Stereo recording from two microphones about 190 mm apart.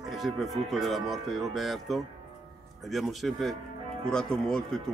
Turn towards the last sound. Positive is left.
turn(degrees=5)  # may be behind; listen again after turning